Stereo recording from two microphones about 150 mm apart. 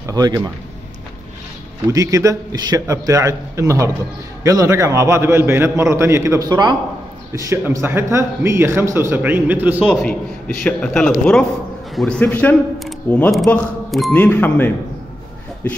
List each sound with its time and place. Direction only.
0.0 s a man's voice: 25° right (ahead or behind)
1.9 s a man's voice: 20° right (ahead or behind)
7.3 s a man's voice: 20° right (ahead or behind)
10.6 s speech: 5° left (ahead or behind)
12.7 s speech: centre (ahead or behind)